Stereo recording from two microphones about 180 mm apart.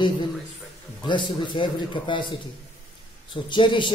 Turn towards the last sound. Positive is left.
turn(degrees=25)  # may be behind; listen again after turning